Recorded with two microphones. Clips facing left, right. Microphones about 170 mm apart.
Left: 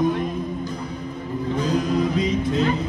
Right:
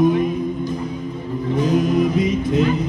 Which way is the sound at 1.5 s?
20° right (ahead or behind).